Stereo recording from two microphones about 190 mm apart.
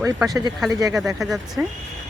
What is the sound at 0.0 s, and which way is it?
Speech, 15° right (ahead or behind).